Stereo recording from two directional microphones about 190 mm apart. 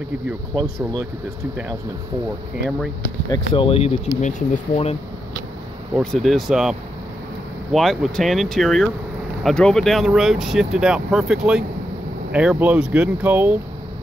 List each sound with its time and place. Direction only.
0.6 s speech: 20° right (ahead or behind)
3.5 s speech: 30° left (ahead or behind)
5.9 s speech: centre (ahead or behind)